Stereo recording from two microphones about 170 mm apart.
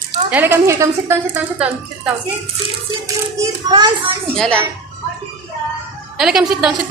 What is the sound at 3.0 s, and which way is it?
A child's voice, 20° right (ahead or behind).